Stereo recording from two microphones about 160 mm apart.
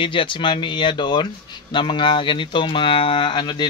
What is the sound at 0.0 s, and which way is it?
Speech, 30° left (ahead or behind).